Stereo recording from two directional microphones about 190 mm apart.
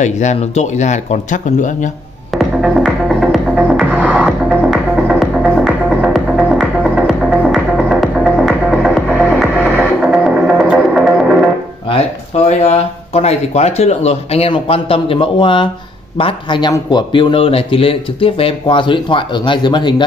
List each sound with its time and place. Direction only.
0.0 s speech: 40° left (ahead or behind)
2.3 s music: centre (ahead or behind)
12.4 s speech: 35° left (ahead or behind)